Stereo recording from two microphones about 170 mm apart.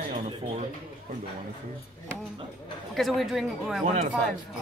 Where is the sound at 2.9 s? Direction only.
Centre (ahead or behind).